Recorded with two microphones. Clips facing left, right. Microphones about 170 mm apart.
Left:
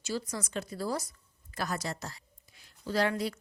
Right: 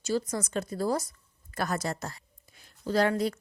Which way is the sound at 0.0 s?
45° right (ahead or behind).